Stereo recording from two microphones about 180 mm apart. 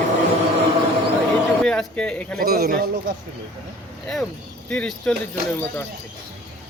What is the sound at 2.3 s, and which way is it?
Speech, 60° right (ahead or behind).